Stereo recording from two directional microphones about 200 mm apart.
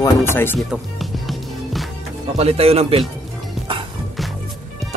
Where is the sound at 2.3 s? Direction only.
30° right (ahead or behind).